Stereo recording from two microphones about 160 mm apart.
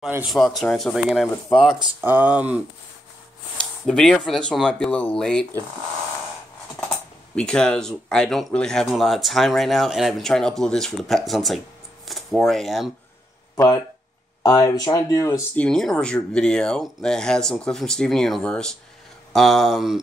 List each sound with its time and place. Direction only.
0.3 s speech: centre (ahead or behind)
3.8 s speech: 5° left (ahead or behind)
7.3 s speech: 5° left (ahead or behind)
14.4 s speech: 20° left (ahead or behind)
15.5 s speech: 5° left (ahead or behind)